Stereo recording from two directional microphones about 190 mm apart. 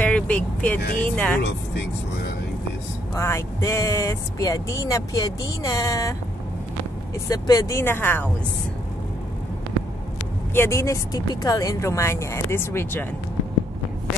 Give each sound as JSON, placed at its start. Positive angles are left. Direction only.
{"t": 0.0, "sound": "vehicle", "side_deg": 10}
{"t": 0.9, "sound": "speech", "side_deg": 5}
{"t": 3.2, "sound": "speech", "side_deg": 15}
{"t": 7.2, "sound": "speech", "side_deg": 20}
{"t": 10.5, "sound": "speech", "side_deg": 15}